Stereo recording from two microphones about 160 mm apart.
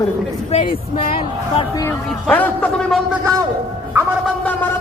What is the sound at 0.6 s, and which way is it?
Speech, 35° left (ahead or behind).